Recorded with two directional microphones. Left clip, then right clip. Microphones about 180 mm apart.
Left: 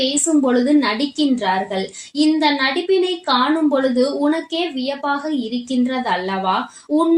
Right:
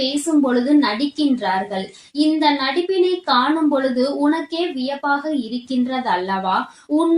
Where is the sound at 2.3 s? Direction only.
45° left (ahead or behind).